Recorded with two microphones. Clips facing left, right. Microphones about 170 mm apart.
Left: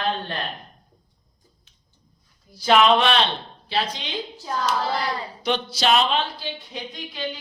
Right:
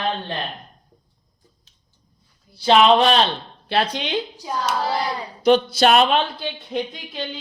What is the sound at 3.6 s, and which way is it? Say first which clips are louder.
Speech: right 5 dB; 60° right (ahead or behind).